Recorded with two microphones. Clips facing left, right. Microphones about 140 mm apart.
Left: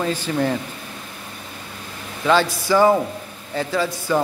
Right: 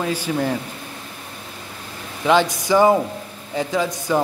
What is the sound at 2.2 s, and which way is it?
A man's voice, 20° right (ahead or behind).